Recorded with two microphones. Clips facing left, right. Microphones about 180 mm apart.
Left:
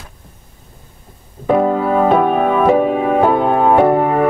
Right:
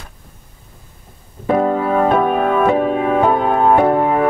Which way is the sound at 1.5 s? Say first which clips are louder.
Left 2 dB; 5° left (ahead or behind).